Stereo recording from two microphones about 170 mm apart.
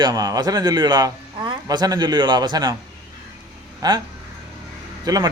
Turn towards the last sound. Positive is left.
turn(degrees=-20)  # may be behind; listen again after turning